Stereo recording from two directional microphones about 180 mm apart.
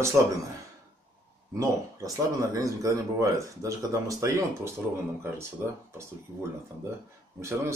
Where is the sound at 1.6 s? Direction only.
20° right (ahead or behind).